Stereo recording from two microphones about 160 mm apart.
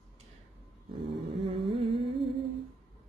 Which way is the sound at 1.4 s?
35° right (ahead or behind).